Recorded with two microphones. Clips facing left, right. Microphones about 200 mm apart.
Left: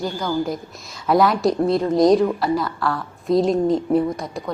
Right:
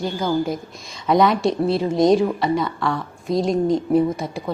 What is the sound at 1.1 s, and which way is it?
A woman's voice, centre (ahead or behind).